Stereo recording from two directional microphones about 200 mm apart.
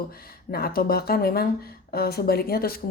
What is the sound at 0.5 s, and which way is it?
A woman's voice, 50° left (ahead or behind).